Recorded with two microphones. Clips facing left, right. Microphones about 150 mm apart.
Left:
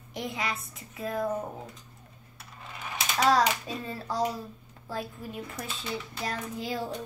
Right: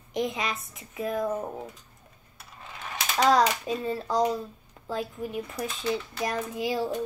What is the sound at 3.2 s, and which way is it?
A child's voice, 15° right (ahead or behind).